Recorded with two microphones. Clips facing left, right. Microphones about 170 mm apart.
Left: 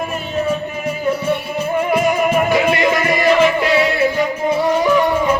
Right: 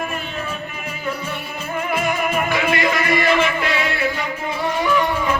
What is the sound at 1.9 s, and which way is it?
Music, 35° left (ahead or behind).